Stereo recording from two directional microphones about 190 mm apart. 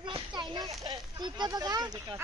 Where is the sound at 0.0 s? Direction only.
25° right (ahead or behind).